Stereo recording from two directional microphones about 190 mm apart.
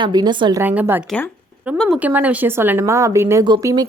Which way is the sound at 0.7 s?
10° right (ahead or behind).